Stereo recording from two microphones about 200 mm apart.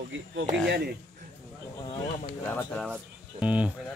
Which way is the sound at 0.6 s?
50° right (ahead or behind).